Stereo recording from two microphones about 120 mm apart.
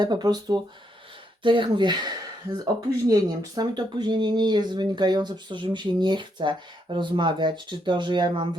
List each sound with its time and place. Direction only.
0.0 s speech: 35° right (ahead or behind)